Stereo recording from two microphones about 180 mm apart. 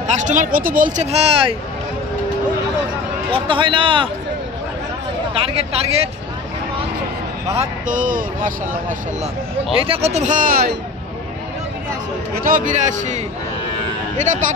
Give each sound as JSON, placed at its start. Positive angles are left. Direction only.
{"t": 0.0, "sound": "speech", "side_deg": -40}
{"t": 3.3, "sound": "a man's voice", "side_deg": -30}
{"t": 5.3, "sound": "speech", "side_deg": -30}
{"t": 7.5, "sound": "speech", "side_deg": -45}
{"t": 9.8, "sound": "speech", "side_deg": -35}
{"t": 12.4, "sound": "speech", "side_deg": -45}
{"t": 14.2, "sound": "speech", "side_deg": -45}